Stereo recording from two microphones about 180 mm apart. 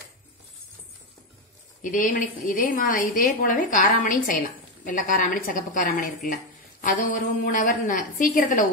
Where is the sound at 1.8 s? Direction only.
50° left (ahead or behind).